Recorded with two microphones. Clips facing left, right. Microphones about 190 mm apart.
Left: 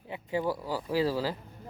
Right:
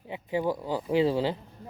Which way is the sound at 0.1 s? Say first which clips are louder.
Right 2 dB; 15° right (ahead or behind).